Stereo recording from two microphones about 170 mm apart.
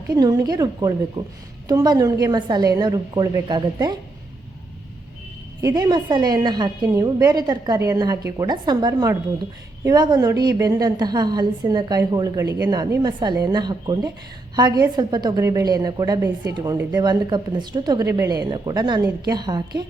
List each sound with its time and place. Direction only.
0.1 s a woman's voice: 20° right (ahead or behind)
5.6 s a woman's voice: 25° right (ahead or behind)